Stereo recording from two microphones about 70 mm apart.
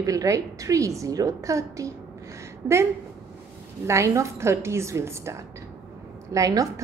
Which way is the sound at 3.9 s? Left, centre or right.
Right.